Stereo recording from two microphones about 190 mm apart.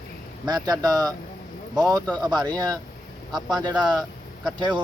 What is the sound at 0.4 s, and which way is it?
Speech, 20° right (ahead or behind).